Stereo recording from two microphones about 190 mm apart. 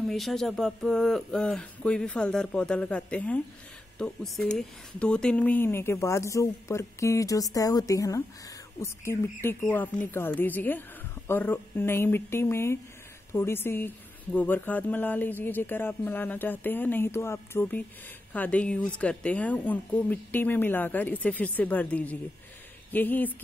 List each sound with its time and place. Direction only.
0.0 s speech: centre (ahead or behind)